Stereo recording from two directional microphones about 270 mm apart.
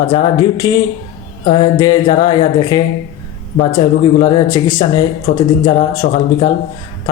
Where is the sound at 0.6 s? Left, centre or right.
Centre.